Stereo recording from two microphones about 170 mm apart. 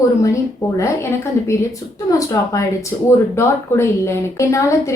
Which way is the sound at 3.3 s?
15° left (ahead or behind).